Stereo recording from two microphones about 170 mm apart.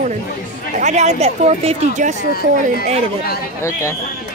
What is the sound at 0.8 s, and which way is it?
Speech, 45° right (ahead or behind).